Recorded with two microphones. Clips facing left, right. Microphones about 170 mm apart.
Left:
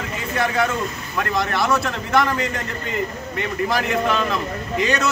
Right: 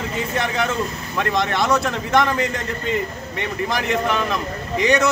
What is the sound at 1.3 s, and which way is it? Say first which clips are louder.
A man's voice: right 1 dB; 20° right (ahead or behind).